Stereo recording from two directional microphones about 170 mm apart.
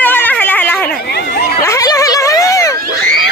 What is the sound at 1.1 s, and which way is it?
Chatter, 70° left (ahead or behind).